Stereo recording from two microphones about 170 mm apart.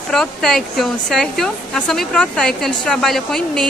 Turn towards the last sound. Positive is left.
turn(degrees=5)  # may be behind; listen again after turning